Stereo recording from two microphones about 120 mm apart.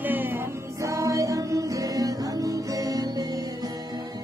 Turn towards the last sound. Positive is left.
turn(degrees=-30)  # may be behind; listen again after turning